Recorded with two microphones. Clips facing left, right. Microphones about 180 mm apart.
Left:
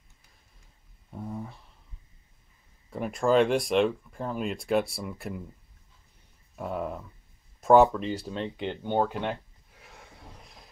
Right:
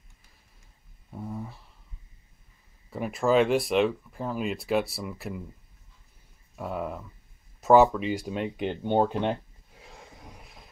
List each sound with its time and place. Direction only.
1.1 s a sound: centre (ahead or behind)
2.9 s speech: 5° right (ahead or behind)
6.5 s speech: centre (ahead or behind); by 10.4 s 20° right (ahead or behind)
10.4 s vehicle: centre (ahead or behind)